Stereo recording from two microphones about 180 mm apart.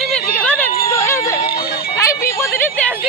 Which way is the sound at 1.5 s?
55° left (ahead or behind).